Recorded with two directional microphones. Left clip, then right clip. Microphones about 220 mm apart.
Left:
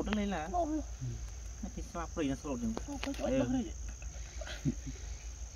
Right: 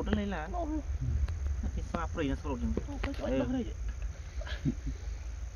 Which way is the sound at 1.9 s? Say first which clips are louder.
Right 2 dB; 10° left (ahead or behind).